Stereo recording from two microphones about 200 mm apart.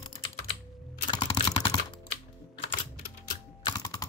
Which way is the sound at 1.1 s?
25° left (ahead or behind).